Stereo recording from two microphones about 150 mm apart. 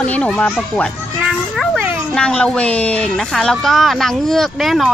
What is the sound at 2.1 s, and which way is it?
A woman's voice, 5° left (ahead or behind).